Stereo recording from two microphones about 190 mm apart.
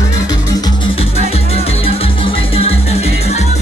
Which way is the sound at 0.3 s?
20° left (ahead or behind).